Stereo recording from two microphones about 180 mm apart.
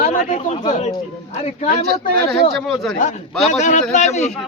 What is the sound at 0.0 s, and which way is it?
A man's voice, 45° left (ahead or behind).